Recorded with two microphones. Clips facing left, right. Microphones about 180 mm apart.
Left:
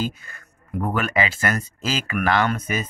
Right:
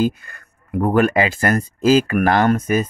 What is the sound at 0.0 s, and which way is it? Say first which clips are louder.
Speech: right 8 dB; 55° right (ahead or behind).